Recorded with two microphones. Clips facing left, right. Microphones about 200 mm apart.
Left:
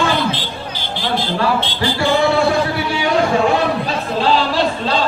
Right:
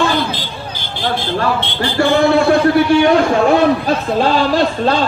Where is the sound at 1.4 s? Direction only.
55° right (ahead or behind).